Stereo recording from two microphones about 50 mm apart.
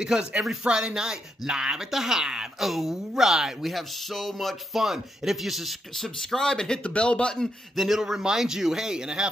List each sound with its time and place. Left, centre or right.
0.0 s speech: centre
4.8 s speech: centre
6.8 s speech: left
7.3 s speech: centre
8.0 s speech: centre